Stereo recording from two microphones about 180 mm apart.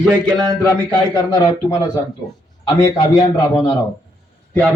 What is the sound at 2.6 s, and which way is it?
Speech, 25° left (ahead or behind).